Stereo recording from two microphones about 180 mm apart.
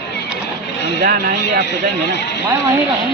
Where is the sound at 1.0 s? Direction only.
50° right (ahead or behind).